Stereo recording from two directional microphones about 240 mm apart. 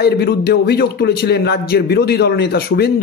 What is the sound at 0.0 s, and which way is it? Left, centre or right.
A man's voice, left.